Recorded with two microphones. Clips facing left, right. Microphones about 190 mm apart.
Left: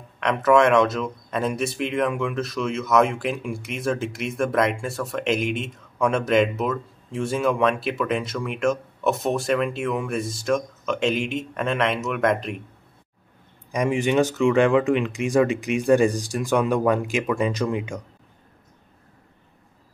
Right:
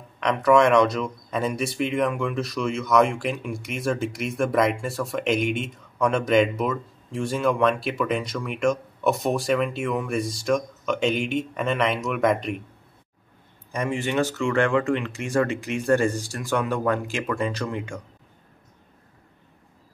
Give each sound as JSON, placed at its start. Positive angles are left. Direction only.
{"t": 0.2, "sound": "speech", "side_deg": 5}
{"t": 13.7, "sound": "speech", "side_deg": 15}